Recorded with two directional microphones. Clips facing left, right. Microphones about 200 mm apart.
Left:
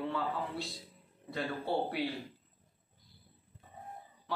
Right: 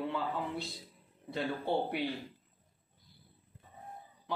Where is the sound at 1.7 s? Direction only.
25° right (ahead or behind).